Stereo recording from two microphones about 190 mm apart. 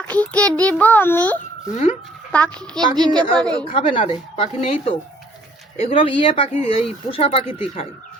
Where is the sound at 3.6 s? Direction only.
25° left (ahead or behind).